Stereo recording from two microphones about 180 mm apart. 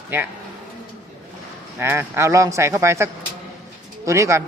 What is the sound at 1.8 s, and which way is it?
Speech, 15° right (ahead or behind).